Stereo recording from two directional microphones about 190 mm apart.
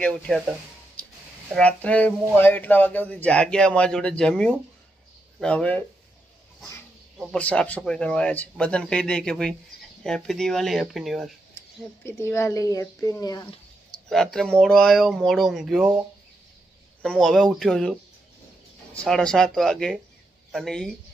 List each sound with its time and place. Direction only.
1.5 s speech: 5° left (ahead or behind)
7.2 s speech: 5° left (ahead or behind)
12.0 s speech: 15° left (ahead or behind)
14.0 s speech: 5° left (ahead or behind)
17.0 s speech: 5° left (ahead or behind)
19.0 s speech: 5° left (ahead or behind)